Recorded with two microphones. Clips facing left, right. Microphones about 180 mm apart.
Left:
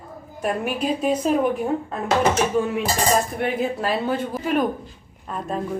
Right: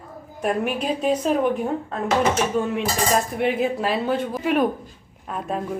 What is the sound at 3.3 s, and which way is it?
A woman's voice, centre (ahead or behind).